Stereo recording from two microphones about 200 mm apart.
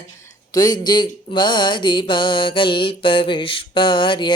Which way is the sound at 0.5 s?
20° left (ahead or behind).